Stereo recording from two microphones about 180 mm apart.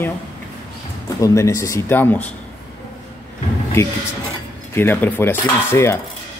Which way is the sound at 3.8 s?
15° left (ahead or behind).